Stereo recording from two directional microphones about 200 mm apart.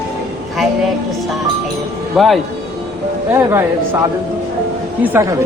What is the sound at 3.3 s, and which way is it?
Speech, 10° right (ahead or behind).